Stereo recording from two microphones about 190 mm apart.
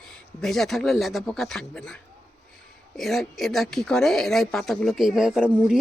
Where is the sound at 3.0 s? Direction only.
Centre (ahead or behind).